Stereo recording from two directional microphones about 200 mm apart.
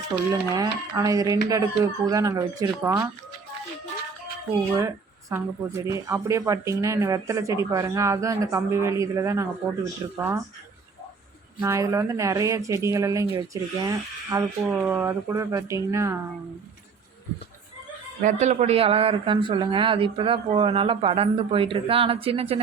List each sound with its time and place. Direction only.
0.5 s speech: 15° right (ahead or behind)
4.7 s speech: 15° right (ahead or behind)
11.6 s speech: 15° right (ahead or behind)
18.2 s speech: 35° right (ahead or behind)